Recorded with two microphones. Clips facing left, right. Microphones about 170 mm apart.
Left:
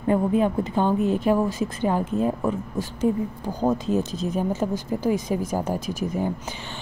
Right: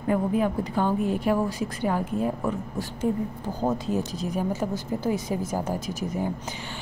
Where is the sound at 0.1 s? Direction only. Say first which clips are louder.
Left 3 dB; 25° left (ahead or behind).